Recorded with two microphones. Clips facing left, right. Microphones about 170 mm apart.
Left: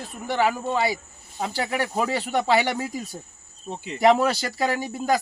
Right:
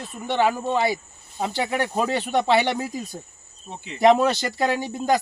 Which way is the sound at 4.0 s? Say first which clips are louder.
Right 2 dB; 5° left (ahead or behind).